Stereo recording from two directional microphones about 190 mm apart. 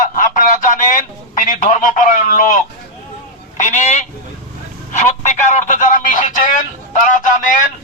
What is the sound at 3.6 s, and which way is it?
Speech, 40° left (ahead or behind).